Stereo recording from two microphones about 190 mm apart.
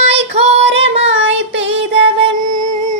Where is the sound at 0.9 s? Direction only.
75° right (ahead or behind).